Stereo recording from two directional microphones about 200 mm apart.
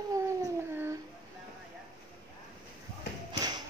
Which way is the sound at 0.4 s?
10° right (ahead or behind).